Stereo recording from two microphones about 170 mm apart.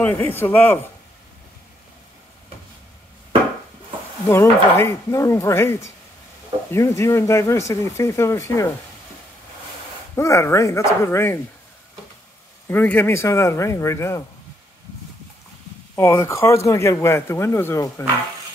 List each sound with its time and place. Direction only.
0.0 s a man's voice: 10° left (ahead or behind)
4.3 s a man's voice: 15° left (ahead or behind)
10.1 s a man's voice: 15° left (ahead or behind)
12.6 s a man's voice: 10° left (ahead or behind)
16.0 s a man's voice: 15° left (ahead or behind)